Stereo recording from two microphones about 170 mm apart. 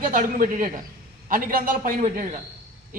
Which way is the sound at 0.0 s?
50° right (ahead or behind).